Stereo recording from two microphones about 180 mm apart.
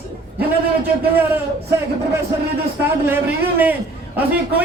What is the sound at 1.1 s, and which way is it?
Speech, 10° right (ahead or behind).